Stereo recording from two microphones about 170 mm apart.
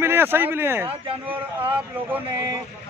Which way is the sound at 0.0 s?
15° right (ahead or behind).